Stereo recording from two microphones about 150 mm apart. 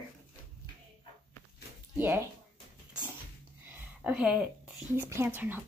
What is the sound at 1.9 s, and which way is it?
Speech, 15° right (ahead or behind).